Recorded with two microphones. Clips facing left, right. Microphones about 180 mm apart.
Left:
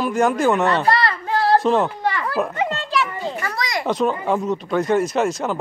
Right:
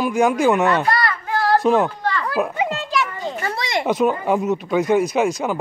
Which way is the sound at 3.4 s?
30° right (ahead or behind).